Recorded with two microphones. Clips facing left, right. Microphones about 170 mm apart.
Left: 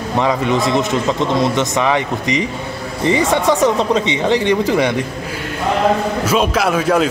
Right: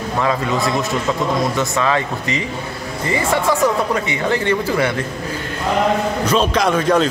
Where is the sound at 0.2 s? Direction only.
20° left (ahead or behind).